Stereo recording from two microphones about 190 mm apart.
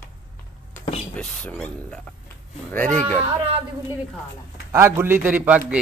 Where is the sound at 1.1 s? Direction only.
5° left (ahead or behind).